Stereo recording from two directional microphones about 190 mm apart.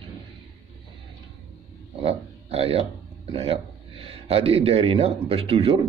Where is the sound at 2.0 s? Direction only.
30° right (ahead or behind).